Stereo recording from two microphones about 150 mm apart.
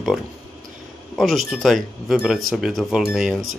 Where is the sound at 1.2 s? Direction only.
Centre (ahead or behind).